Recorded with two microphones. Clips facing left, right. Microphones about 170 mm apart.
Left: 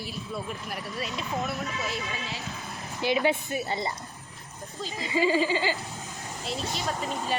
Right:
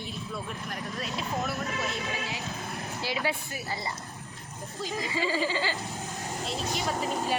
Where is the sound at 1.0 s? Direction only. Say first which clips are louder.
Left 1 dB; centre (ahead or behind).